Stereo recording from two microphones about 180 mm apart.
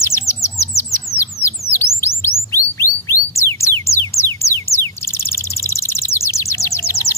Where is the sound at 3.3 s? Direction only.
15° left (ahead or behind).